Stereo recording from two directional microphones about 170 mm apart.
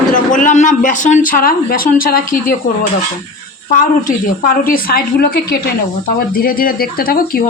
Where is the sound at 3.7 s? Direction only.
50° left (ahead or behind).